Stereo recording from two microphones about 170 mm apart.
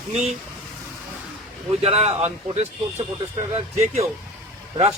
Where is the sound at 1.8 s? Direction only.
40° right (ahead or behind).